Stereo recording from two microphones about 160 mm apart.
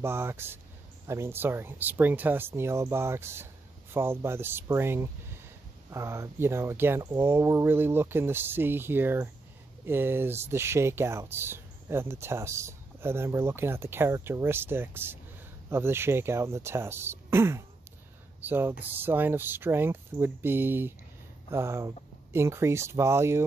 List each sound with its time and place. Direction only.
0.0 s speech: 15° right (ahead or behind)